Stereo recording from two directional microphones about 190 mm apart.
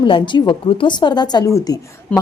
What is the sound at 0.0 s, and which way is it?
A woman's voice, 25° left (ahead or behind).